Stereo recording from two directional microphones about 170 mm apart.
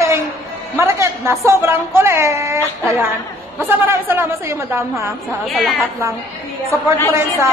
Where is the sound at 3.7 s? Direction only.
15° right (ahead or behind).